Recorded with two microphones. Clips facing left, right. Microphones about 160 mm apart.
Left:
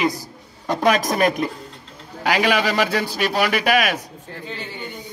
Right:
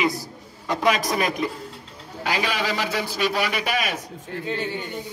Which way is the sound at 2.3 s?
80° left.